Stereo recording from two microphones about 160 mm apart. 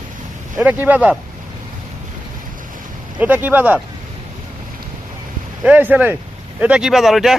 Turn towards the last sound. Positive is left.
turn(degrees=0)  # may be behind; listen again after turning